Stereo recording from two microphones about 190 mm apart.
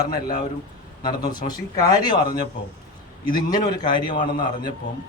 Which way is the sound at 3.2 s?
20° left (ahead or behind).